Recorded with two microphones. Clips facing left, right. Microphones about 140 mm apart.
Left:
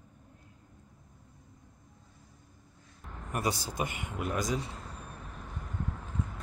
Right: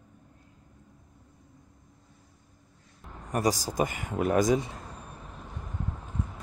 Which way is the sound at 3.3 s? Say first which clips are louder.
Right 6 dB; 40° right (ahead or behind).